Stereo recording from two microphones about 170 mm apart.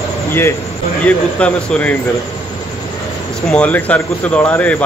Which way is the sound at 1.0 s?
5° left (ahead or behind).